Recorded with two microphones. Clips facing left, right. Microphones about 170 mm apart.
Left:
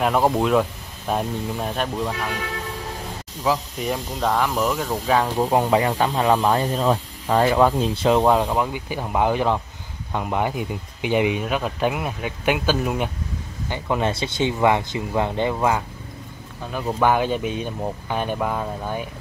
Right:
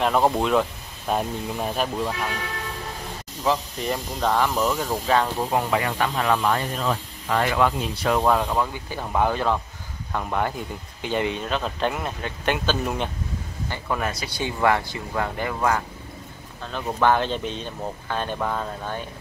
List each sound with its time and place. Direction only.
0.0 s speech: 5° left (ahead or behind)
3.4 s speech: 5° left (ahead or behind)
5.4 s speech: 25° left (ahead or behind); by 13.1 s 10° left (ahead or behind)
13.7 s speech: 20° left (ahead or behind)
17.0 s speech: 10° left (ahead or behind)